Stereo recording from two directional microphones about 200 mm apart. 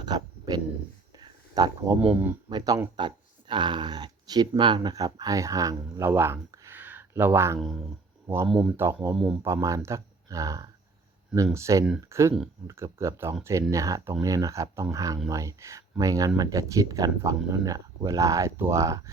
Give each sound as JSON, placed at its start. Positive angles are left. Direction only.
{"t": 0.0, "sound": "a sound", "side_deg": -20}
{"t": 2.0, "sound": "speech", "side_deg": -10}
{"t": 7.6, "sound": "speech", "side_deg": 0}
{"t": 8.7, "sound": "speech", "side_deg": -10}
{"t": 9.1, "sound": "speech", "side_deg": 0}
{"t": 9.4, "sound": "speech", "side_deg": -15}